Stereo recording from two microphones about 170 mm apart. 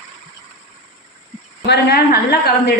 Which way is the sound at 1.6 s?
75° left (ahead or behind).